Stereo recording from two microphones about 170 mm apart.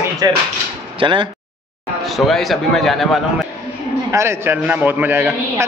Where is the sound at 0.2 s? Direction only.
20° right (ahead or behind).